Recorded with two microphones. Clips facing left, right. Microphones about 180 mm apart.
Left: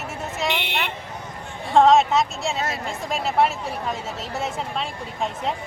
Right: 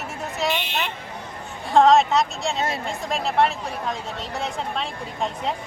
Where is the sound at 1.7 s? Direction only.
Centre (ahead or behind).